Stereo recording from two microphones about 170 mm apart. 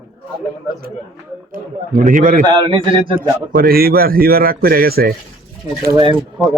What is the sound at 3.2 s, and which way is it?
A man's voice, 60° right (ahead or behind).